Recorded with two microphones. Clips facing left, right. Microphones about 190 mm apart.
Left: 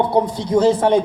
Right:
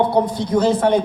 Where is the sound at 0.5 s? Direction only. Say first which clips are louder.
Left 2 dB; 25° left (ahead or behind).